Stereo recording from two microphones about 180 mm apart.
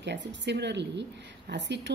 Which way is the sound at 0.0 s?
75° right (ahead or behind).